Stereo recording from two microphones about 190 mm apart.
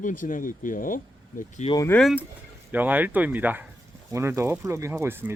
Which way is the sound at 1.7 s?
15° left (ahead or behind).